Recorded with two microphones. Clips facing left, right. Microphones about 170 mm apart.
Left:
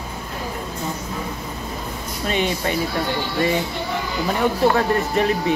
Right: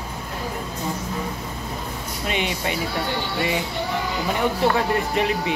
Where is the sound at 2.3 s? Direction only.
15° right (ahead or behind).